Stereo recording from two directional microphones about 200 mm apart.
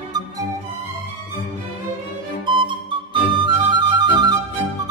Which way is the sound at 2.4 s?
25° right (ahead or behind).